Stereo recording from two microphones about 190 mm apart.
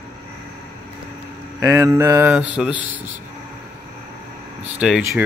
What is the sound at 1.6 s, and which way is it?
Speech, 15° right (ahead or behind).